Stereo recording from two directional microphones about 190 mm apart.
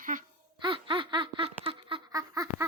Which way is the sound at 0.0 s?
45° right (ahead or behind).